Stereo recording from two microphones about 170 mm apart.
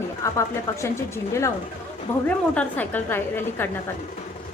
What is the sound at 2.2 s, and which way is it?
A woman's voice, 10° left (ahead or behind).